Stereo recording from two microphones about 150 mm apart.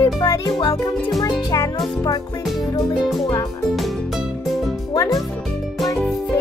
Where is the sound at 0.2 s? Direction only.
25° left (ahead or behind).